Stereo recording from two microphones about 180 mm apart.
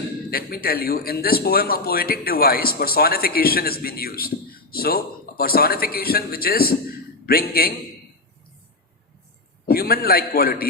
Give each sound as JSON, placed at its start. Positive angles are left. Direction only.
{"t": 0.3, "sound": "a man's voice", "side_deg": 55}
{"t": 9.6, "sound": "a man's voice", "side_deg": 55}